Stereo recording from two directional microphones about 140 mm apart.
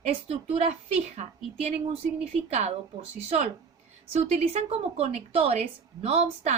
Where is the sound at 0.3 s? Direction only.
50° right (ahead or behind).